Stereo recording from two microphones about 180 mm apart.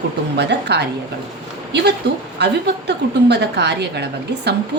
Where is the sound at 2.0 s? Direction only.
70° right (ahead or behind).